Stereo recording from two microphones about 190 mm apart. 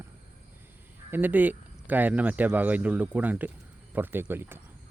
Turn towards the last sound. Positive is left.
turn(degrees=-10)  # may be behind; listen again after turning